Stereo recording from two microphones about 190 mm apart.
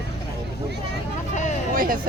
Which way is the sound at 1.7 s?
50° right (ahead or behind).